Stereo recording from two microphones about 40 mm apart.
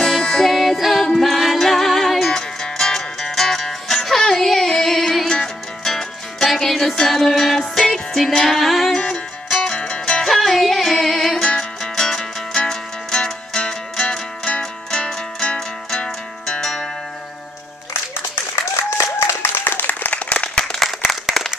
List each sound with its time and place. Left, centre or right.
0.0 s music: centre
0.5 s music: centre
9.0 s music: left
10.2 s music: centre
19.1 s applause: left
19.9 s applause: left
20.2 s applause: left
21.3 s applause: centre